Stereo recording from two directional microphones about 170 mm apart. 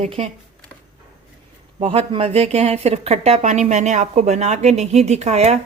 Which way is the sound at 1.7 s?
35° right (ahead or behind).